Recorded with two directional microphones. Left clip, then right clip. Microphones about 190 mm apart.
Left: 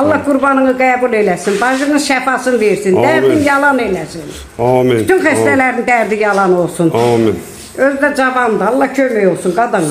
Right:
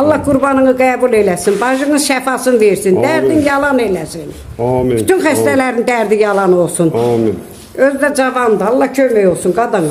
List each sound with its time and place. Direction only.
0.1 s speech: 30° right (ahead or behind)
4.6 s speech: centre (ahead or behind)
5.0 s speech: 35° right (ahead or behind)
6.9 s speech: 5° left (ahead or behind)
7.8 s speech: 30° right (ahead or behind)